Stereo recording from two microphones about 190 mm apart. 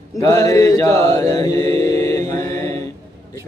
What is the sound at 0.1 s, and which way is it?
Mantra, 15° left (ahead or behind).